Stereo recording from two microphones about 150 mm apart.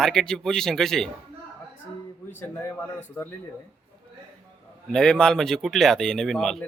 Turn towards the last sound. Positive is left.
turn(degrees=0)  # may be behind; listen again after turning